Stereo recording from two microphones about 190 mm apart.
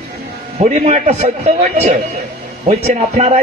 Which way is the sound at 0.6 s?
35° right (ahead or behind).